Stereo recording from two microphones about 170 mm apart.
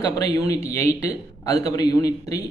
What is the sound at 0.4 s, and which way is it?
A man's voice, 20° left (ahead or behind).